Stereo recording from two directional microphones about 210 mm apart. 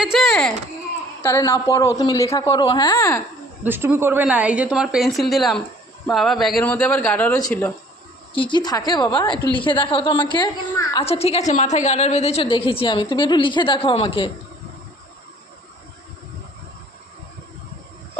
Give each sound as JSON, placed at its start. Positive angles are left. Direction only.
{"t": 0.0, "sound": "a woman's voice", "side_deg": 0}
{"t": 1.2, "sound": "a man's voice", "side_deg": 10}
{"t": 3.6, "sound": "a woman's voice", "side_deg": -10}
{"t": 8.3, "sound": "a woman's voice", "side_deg": 25}